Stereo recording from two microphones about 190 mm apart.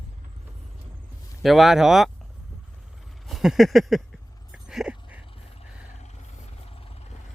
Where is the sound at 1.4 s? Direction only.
Centre (ahead or behind).